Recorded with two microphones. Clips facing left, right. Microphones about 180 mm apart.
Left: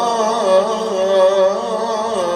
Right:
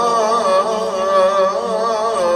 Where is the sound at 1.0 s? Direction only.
30° left (ahead or behind).